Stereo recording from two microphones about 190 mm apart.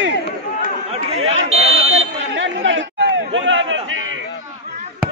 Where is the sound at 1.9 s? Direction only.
85° right.